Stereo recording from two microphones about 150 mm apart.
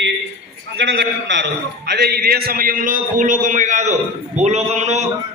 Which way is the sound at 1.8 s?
90° right.